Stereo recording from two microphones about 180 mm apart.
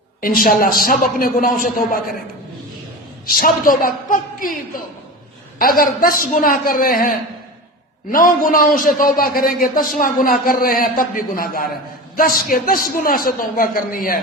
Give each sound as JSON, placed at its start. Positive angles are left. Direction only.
{"t": 0.2, "sound": "a man's voice", "side_deg": 55}
{"t": 3.2, "sound": "a man's voice", "side_deg": 55}
{"t": 8.1, "sound": "a man's voice", "side_deg": 50}